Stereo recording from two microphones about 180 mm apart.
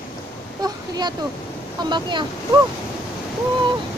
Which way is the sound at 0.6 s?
20° right (ahead or behind).